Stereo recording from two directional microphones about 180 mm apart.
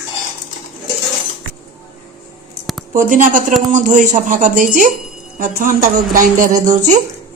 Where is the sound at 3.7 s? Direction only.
45° right (ahead or behind).